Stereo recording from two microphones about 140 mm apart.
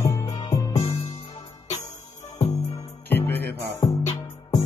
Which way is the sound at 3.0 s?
15° left (ahead or behind).